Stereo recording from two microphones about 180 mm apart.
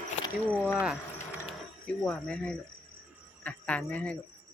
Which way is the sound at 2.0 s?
5° left (ahead or behind).